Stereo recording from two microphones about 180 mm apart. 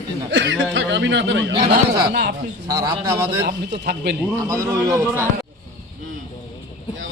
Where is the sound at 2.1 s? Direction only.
60° right (ahead or behind).